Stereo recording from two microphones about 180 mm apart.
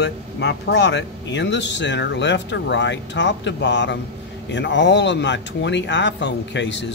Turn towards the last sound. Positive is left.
turn(degrees=80)